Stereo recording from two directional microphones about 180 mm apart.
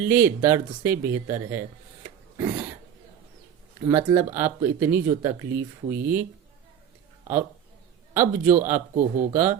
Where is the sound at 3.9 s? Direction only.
10° right (ahead or behind).